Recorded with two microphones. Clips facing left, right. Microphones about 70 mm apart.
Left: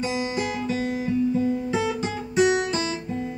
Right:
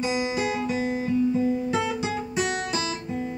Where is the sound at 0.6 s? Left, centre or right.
Centre.